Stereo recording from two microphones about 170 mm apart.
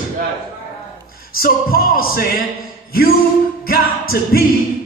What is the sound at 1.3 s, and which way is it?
Speech, 60° left (ahead or behind).